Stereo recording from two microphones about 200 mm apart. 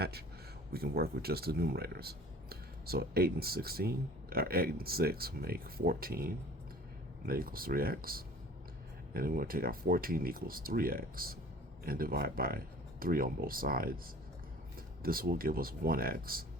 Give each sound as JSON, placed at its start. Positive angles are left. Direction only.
{"t": 0.0, "sound": "a sound", "side_deg": -50}
{"t": 0.7, "sound": "speech", "side_deg": -50}
{"t": 15.0, "sound": "speech", "side_deg": -45}